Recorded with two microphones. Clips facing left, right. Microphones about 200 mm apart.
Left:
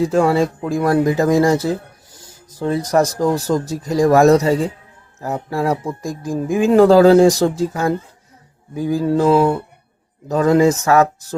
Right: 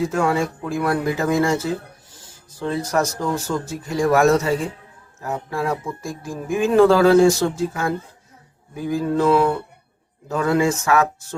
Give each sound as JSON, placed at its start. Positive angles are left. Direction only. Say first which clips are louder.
{"t": 0.1, "sound": "speech", "louder": "left 5 dB", "side_deg": 35}